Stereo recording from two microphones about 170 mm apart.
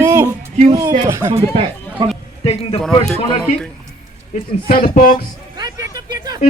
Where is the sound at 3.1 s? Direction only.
5° left (ahead or behind).